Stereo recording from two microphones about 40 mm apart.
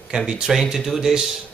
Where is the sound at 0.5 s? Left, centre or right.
Centre.